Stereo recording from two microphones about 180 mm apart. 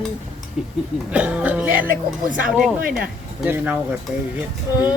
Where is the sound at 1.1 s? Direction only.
5° right (ahead or behind).